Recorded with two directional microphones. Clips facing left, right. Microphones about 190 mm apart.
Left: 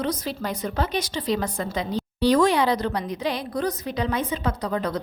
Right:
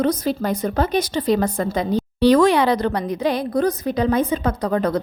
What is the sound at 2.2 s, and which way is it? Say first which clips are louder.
A woman's voice: right 5 dB; 70° right (ahead or behind).